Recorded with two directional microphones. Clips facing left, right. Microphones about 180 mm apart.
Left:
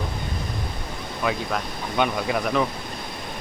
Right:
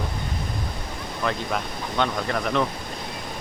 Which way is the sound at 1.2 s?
5° left (ahead or behind).